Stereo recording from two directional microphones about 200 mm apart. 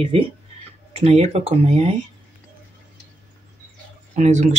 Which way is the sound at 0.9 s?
30° right (ahead or behind).